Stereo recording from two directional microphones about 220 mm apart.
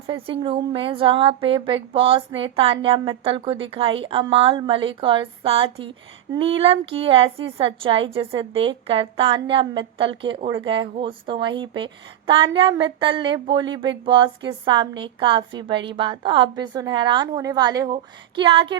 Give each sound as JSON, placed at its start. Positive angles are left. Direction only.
{"t": 0.1, "sound": "speech", "side_deg": -25}